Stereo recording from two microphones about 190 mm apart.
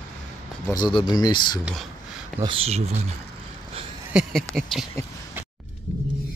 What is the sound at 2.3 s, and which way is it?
Speech, 30° right (ahead or behind).